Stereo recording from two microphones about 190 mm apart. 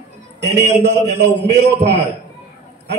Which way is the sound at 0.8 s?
65° right (ahead or behind).